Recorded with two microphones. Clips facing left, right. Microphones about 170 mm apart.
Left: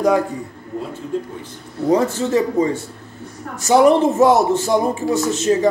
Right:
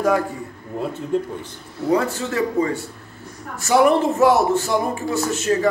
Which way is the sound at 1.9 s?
20° left (ahead or behind).